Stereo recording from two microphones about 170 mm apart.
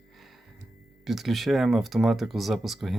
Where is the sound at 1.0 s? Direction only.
Centre (ahead or behind).